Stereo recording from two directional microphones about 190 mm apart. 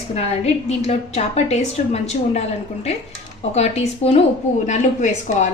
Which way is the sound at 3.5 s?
35° left (ahead or behind).